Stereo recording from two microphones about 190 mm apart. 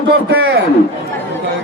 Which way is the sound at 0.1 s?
75° right (ahead or behind).